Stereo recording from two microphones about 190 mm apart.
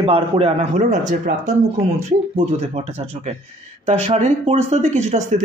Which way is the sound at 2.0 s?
35° right (ahead or behind).